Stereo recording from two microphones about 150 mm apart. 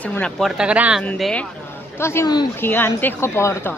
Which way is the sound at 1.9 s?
15° left (ahead or behind).